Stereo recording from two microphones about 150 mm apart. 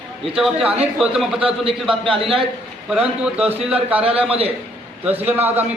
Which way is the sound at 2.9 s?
5° right (ahead or behind).